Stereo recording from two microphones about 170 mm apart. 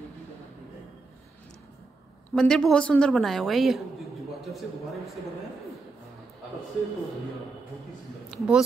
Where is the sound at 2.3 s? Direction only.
5° left (ahead or behind).